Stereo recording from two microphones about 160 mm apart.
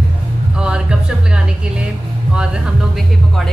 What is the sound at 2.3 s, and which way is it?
Music, 5° right (ahead or behind).